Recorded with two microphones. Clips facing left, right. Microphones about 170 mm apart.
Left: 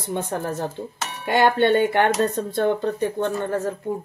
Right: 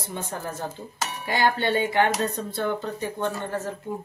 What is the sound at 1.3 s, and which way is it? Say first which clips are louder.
Speech: left 6 dB; 60° left (ahead or behind).